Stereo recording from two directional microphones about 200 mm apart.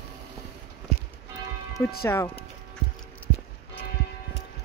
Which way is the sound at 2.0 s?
15° left (ahead or behind).